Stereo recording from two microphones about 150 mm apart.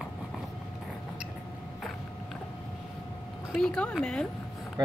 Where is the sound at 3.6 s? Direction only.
5° left (ahead or behind).